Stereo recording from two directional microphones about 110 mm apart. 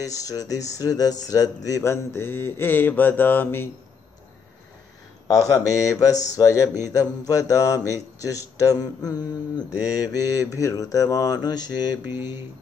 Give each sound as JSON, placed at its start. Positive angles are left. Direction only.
{"t": 0.0, "sound": "mantra", "side_deg": 30}
{"t": 5.3, "sound": "mantra", "side_deg": 30}
{"t": 12.0, "sound": "speech", "side_deg": -20}